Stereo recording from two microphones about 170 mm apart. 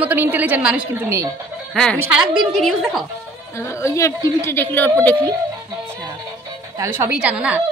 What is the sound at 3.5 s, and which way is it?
Speech, 15° left (ahead or behind).